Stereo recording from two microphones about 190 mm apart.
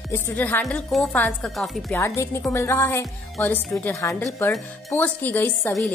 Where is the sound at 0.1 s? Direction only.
10° left (ahead or behind).